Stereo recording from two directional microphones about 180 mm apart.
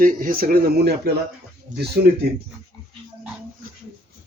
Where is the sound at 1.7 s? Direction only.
45° right (ahead or behind).